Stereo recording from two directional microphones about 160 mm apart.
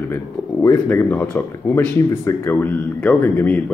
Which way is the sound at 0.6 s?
15° left (ahead or behind).